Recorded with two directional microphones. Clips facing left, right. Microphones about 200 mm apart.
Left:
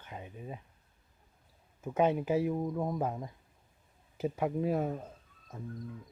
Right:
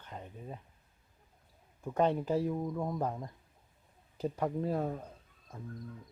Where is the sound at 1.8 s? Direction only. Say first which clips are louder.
Left 1 dB; 5° left (ahead or behind).